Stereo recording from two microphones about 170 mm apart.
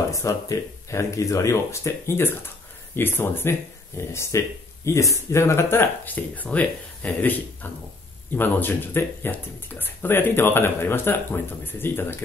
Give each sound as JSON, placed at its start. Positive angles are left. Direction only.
{"t": 0.1, "sound": "speech", "side_deg": 20}